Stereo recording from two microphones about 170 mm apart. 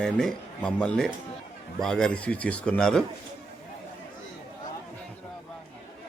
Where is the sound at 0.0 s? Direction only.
5° left (ahead or behind).